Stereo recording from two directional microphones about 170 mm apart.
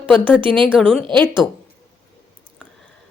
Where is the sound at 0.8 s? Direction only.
5° left (ahead or behind).